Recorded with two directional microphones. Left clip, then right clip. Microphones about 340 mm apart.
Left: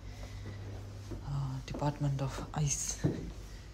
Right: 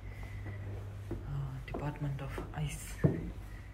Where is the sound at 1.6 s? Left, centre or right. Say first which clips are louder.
Left 5 dB; centre.